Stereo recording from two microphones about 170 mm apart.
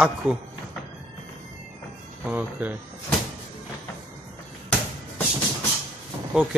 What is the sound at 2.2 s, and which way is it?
Speech, 10° right (ahead or behind).